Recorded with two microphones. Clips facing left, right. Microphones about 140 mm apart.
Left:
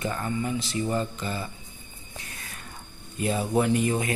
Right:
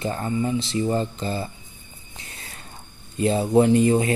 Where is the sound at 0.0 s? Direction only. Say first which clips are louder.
Right 4 dB; 30° right (ahead or behind).